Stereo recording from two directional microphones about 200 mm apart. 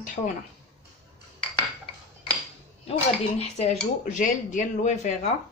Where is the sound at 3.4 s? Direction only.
35° left (ahead or behind).